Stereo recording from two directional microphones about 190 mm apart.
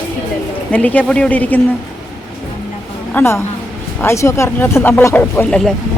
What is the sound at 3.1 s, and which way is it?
Speech, 15° left (ahead or behind).